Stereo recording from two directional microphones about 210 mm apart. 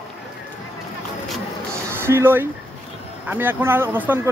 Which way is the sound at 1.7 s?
10° right (ahead or behind).